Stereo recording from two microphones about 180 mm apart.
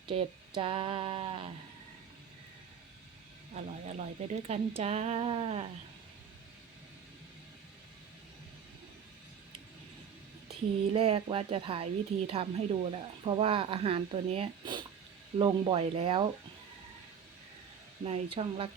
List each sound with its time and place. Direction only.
0.1 s speech: 30° right (ahead or behind)
3.5 s speech: 40° right (ahead or behind)
10.9 s speech: 30° right (ahead or behind)
18.0 s speech: 35° right (ahead or behind)